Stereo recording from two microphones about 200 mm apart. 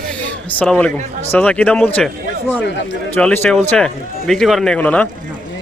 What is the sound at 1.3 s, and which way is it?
Speech, 5° left (ahead or behind).